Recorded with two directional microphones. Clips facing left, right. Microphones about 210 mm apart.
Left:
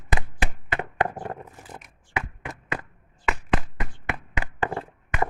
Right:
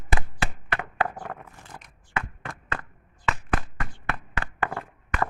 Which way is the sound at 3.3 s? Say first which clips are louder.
Left 2 dB; 20° left (ahead or behind).